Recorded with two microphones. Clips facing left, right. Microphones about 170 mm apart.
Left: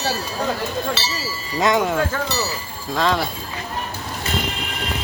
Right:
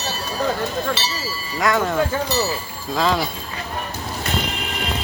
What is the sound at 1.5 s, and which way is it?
Speech, 20° left (ahead or behind).